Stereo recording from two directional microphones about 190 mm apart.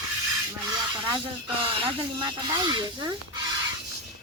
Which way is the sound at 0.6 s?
20° right (ahead or behind).